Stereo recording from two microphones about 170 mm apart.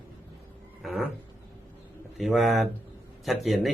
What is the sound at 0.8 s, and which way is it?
Speech, centre (ahead or behind).